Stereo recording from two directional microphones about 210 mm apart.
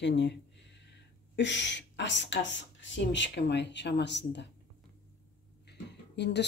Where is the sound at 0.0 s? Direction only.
55° left (ahead or behind).